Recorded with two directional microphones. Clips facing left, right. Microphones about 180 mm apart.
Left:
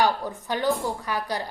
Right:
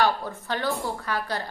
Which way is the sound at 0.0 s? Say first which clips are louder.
Left 1 dB; 15° left (ahead or behind).